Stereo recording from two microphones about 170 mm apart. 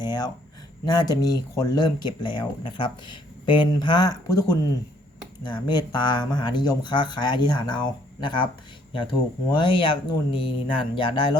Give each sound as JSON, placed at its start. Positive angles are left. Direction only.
{"t": 0.0, "sound": "a sound", "side_deg": 25}
{"t": 0.9, "sound": "speech", "side_deg": 25}
{"t": 9.5, "sound": "speech", "side_deg": 30}